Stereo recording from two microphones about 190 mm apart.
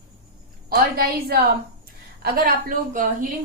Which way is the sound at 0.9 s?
50° right (ahead or behind).